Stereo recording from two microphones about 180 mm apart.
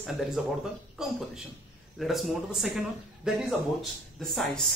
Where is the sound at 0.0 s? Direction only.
Centre (ahead or behind).